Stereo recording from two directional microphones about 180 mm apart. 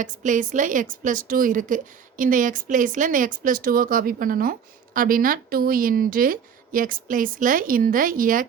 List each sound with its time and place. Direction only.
0.0 s a woman's voice: 45° right (ahead or behind)